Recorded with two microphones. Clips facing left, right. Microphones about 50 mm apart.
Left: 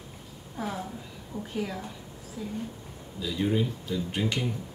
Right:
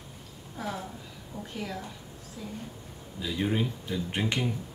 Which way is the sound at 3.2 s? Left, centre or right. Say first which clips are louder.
Left 2 dB; right.